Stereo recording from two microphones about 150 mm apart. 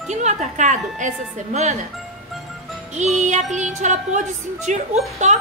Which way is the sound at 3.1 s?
50° right (ahead or behind).